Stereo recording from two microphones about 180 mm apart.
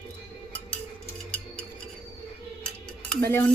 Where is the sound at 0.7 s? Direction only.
5° left (ahead or behind).